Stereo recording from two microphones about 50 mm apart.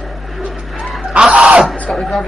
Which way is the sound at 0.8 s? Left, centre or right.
Centre.